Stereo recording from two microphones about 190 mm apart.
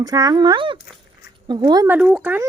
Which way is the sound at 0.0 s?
20° right (ahead or behind).